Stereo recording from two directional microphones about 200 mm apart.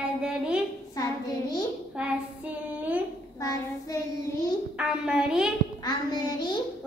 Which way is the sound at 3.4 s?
15° left (ahead or behind).